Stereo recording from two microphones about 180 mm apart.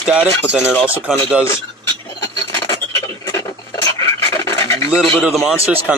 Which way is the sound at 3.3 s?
15° left (ahead or behind).